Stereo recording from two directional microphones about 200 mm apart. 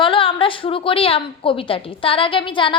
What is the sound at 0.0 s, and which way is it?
A woman's voice, 25° left (ahead or behind).